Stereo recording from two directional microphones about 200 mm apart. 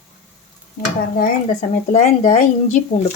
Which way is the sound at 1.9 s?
35° left (ahead or behind).